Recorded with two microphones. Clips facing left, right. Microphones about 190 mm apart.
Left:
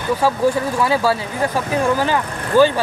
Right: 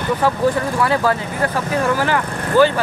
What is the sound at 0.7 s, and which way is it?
Speech, 10° left (ahead or behind).